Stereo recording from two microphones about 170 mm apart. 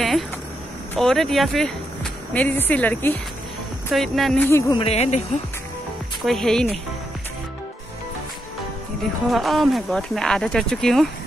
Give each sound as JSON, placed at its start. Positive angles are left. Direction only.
{"t": 0.9, "sound": "speech", "side_deg": 0}
{"t": 3.9, "sound": "speech", "side_deg": 0}
{"t": 4.4, "sound": "speech", "side_deg": 15}
{"t": 4.7, "sound": "speech", "side_deg": 35}
{"t": 6.2, "sound": "speech", "side_deg": 0}
{"t": 9.3, "sound": "speech", "side_deg": 0}